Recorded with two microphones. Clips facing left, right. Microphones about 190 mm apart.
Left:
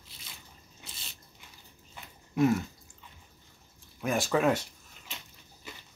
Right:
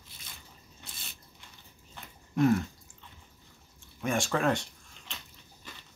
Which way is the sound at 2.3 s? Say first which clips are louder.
Right 1 dB; 5° left (ahead or behind).